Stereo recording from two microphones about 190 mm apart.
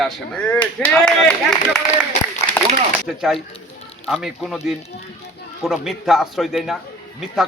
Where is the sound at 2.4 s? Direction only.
30° right (ahead or behind).